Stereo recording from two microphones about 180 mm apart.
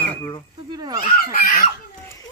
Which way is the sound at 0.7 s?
20° right (ahead or behind).